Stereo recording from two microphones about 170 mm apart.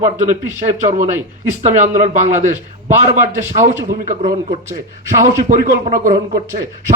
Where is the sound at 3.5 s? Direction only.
45° right (ahead or behind).